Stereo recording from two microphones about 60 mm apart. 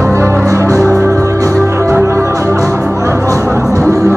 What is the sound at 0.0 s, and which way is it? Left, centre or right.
Music, right.